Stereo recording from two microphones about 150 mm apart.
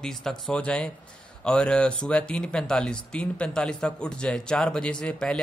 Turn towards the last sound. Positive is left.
turn(degrees=5)  # may be behind; listen again after turning